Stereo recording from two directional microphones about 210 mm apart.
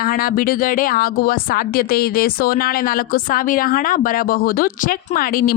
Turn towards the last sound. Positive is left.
turn(degrees=45)  # may be behind; listen again after turning